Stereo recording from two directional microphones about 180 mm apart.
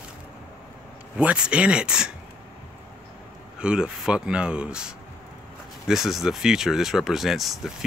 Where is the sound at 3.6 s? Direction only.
5° right (ahead or behind).